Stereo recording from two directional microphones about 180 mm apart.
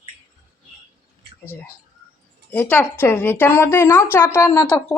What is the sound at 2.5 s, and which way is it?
Speech, 10° left (ahead or behind).